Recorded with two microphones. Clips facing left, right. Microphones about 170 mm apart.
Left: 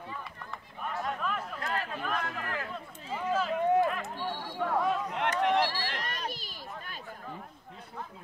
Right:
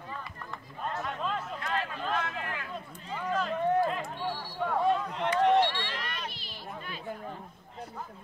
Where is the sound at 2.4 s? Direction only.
35° left (ahead or behind).